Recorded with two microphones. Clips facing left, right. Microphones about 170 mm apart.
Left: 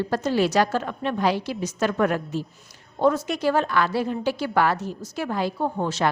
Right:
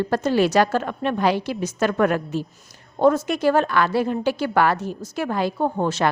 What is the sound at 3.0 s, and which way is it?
A woman's voice, 50° right (ahead or behind).